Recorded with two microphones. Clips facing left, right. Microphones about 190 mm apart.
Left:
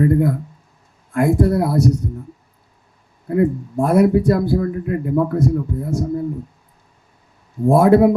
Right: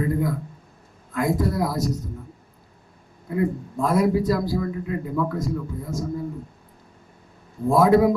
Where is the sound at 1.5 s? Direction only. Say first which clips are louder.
Left 7 dB; 60° left (ahead or behind).